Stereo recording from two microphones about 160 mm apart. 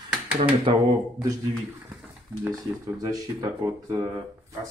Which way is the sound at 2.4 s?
20° right (ahead or behind).